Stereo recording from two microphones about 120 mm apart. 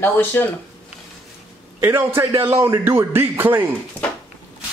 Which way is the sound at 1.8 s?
20° right (ahead or behind).